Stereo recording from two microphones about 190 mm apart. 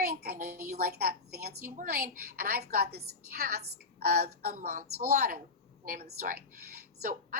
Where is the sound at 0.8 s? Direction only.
55° right (ahead or behind).